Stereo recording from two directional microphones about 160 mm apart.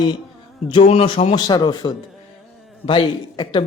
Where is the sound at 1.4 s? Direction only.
25° left (ahead or behind).